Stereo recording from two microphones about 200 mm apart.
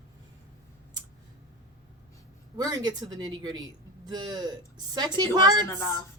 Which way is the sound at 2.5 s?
20° right (ahead or behind).